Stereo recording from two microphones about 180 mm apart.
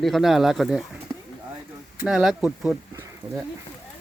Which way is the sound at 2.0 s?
5° right (ahead or behind).